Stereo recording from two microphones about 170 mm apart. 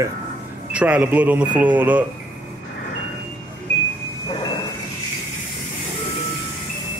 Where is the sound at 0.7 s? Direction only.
10° right (ahead or behind).